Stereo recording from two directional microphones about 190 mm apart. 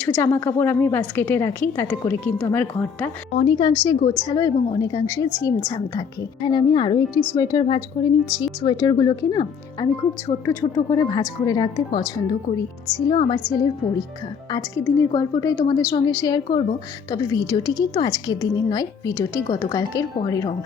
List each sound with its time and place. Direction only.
0.0 s a woman's voice: 10° left (ahead or behind)
3.3 s speech: 25° left (ahead or behind)
7.1 s speech: 5° right (ahead or behind)
7.3 s speech: 20° left (ahead or behind)
13.1 s speech: 25° left (ahead or behind)